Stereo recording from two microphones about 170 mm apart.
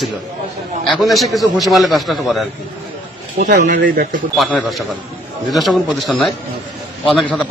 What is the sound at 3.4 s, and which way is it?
Speech, 45° right (ahead or behind).